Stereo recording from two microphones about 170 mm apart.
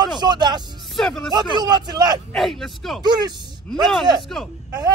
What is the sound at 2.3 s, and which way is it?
Speech, centre (ahead or behind).